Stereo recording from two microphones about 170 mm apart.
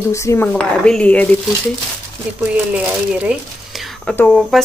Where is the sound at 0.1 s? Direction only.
15° left (ahead or behind).